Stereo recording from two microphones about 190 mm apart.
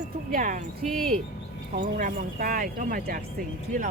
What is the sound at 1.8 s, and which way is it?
Speech, 45° right (ahead or behind).